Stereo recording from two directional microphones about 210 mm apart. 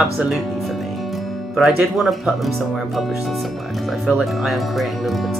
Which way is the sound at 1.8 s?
Centre (ahead or behind).